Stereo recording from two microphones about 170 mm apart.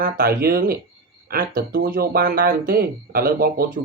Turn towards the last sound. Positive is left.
turn(degrees=-60)  # may be behind; listen again after turning